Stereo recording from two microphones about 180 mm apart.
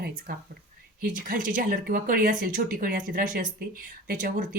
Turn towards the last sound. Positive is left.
turn(degrees=-55)  # may be behind; listen again after turning